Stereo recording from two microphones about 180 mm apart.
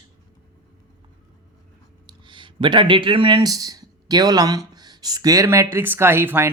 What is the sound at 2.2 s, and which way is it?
Speech, 25° right (ahead or behind).